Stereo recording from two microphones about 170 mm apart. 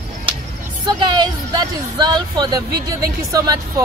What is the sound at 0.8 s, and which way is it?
Speech, 25° right (ahead or behind).